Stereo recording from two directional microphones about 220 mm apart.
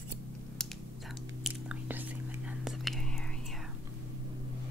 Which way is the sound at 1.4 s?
5° right (ahead or behind).